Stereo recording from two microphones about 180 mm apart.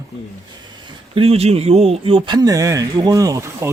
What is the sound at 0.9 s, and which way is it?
Speech, 30° right (ahead or behind).